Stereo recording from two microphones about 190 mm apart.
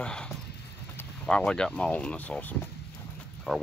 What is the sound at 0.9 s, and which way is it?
Speech, 5° left (ahead or behind).